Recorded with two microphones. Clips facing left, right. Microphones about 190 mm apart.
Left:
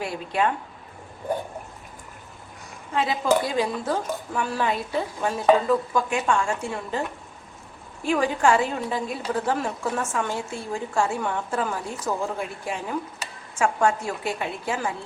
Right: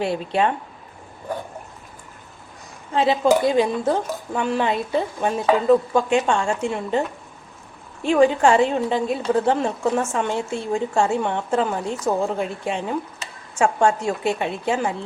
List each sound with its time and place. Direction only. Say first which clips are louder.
0.0 s a woman's voice: right 4 dB; 25° right (ahead or behind)
2.9 s a woman's voice: right 5 dB; 30° right (ahead or behind)
8.0 s a woman's voice: right 5 dB; 25° right (ahead or behind)